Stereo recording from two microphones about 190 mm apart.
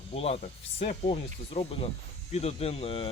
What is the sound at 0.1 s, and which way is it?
Speech, 30° left (ahead or behind).